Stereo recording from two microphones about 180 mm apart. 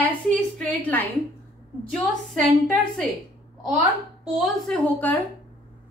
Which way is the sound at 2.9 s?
Centre (ahead or behind).